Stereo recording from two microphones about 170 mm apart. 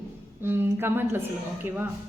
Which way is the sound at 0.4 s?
15° right (ahead or behind).